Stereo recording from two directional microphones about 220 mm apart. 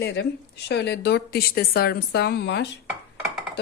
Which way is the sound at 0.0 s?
50° left (ahead or behind).